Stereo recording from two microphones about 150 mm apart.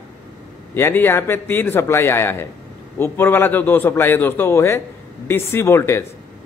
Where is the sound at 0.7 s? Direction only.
15° left (ahead or behind).